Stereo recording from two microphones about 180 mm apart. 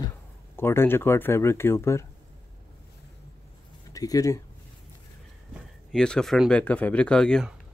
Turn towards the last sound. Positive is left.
turn(degrees=0)  # may be behind; listen again after turning